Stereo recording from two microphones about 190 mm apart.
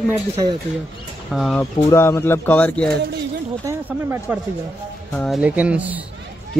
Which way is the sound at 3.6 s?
10° right (ahead or behind).